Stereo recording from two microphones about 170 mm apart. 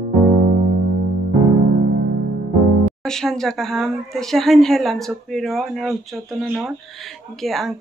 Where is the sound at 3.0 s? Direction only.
5° left (ahead or behind).